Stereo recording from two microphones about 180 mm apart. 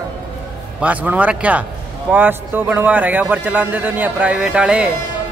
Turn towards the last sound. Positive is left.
turn(degrees=-5)  # may be behind; listen again after turning